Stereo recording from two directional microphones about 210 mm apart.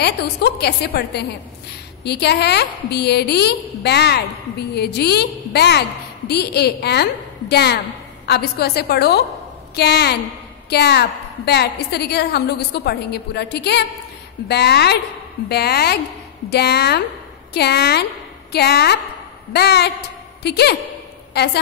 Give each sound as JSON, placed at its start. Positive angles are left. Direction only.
{"t": 0.0, "sound": "a woman's voice", "side_deg": 50}